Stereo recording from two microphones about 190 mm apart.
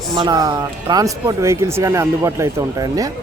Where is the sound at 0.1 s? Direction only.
20° right (ahead or behind).